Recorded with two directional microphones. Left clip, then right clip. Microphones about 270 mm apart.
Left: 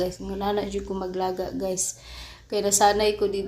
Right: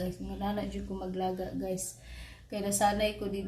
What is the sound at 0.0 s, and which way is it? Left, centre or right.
Speech, left.